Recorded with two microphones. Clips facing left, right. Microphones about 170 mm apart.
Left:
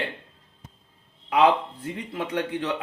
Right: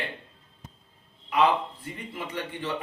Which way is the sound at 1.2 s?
75° left (ahead or behind).